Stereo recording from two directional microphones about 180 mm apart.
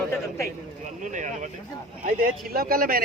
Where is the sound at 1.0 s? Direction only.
45° right (ahead or behind).